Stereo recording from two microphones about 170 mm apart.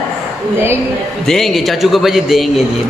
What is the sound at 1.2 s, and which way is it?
A man's voice, centre (ahead or behind).